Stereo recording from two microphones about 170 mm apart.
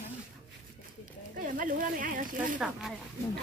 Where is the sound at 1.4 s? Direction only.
50° right (ahead or behind).